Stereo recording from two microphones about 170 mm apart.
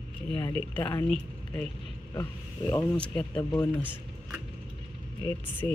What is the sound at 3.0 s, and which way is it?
Speech, 5° left (ahead or behind).